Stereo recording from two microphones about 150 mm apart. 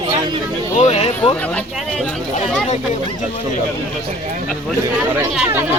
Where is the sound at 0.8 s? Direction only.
50° left (ahead or behind).